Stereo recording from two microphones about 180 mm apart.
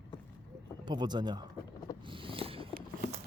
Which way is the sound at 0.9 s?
25° right (ahead or behind).